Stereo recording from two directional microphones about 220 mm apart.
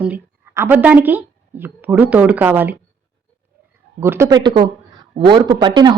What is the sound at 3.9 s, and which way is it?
Speech, 10° right (ahead or behind).